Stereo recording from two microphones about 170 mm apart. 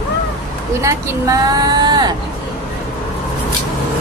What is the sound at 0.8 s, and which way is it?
Speech, 20° right (ahead or behind).